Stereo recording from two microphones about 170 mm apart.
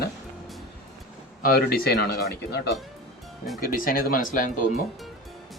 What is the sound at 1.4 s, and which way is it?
Speech, 60° left (ahead or behind).